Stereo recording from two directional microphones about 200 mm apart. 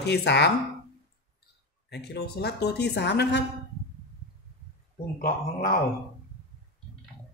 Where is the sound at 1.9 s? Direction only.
55° left (ahead or behind).